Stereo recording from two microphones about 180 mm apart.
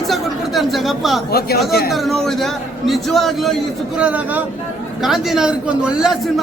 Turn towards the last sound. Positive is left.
turn(degrees=-5)  # may be behind; listen again after turning